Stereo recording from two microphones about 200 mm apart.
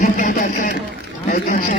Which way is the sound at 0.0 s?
40° left (ahead or behind).